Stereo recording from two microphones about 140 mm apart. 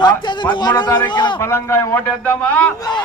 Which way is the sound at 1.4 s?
15° left (ahead or behind).